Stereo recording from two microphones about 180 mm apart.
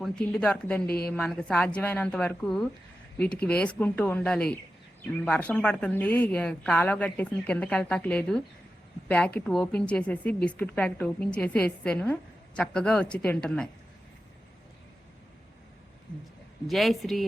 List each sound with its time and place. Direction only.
0.0 s a woman's voice: 5° left (ahead or behind)
0.9 s a woman's voice: 60° left (ahead or behind)
1.1 s a woman's voice: 5° left (ahead or behind)
16.6 s a woman's voice: centre (ahead or behind)